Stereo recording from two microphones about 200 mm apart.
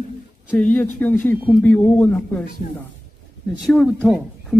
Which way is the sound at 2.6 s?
35° left (ahead or behind).